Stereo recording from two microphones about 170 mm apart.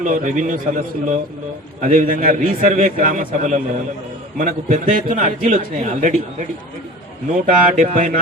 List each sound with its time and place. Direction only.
0.0 s a man's voice: 50° right (ahead or behind)
7.4 s a man's voice: 50° right (ahead or behind)